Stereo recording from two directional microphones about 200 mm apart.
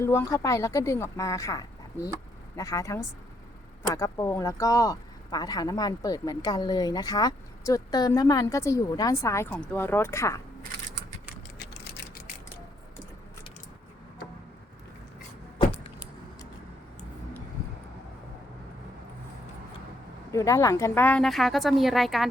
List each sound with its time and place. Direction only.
0.0 s speech: 15° left (ahead or behind)
11.6 s a sound: 55° left (ahead or behind)
15.5 s vehicle: 25° left (ahead or behind)
20.3 s speech: 15° left (ahead or behind); by 22.3 s centre (ahead or behind)